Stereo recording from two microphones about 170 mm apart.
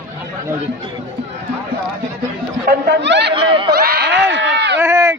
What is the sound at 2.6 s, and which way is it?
Chatter, 85° right.